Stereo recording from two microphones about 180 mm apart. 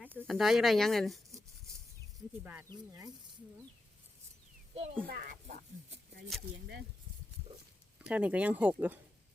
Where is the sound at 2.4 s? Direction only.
10° right (ahead or behind).